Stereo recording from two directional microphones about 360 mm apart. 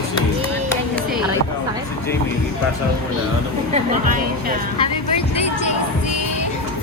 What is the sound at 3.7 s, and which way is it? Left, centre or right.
Speech, right.